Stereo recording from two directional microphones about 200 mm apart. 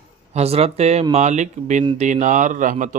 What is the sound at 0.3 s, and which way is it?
Speech, 30° right (ahead or behind).